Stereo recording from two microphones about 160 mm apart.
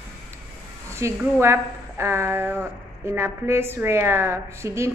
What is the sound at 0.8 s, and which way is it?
A woman's voice, 15° right (ahead or behind).